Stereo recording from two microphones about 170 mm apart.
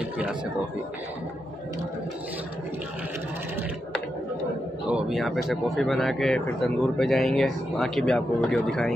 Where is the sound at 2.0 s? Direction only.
10° right (ahead or behind).